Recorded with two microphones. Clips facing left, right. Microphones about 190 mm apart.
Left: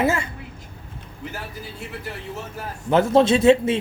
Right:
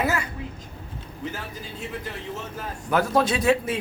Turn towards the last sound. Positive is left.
turn(degrees=25)  # may be behind; listen again after turning